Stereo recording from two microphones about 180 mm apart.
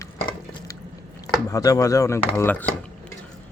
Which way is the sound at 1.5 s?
20° left (ahead or behind).